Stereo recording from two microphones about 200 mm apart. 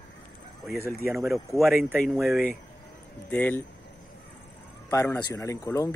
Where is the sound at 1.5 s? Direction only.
Centre (ahead or behind).